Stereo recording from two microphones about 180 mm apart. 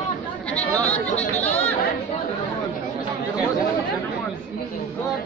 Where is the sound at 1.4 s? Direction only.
10° left (ahead or behind).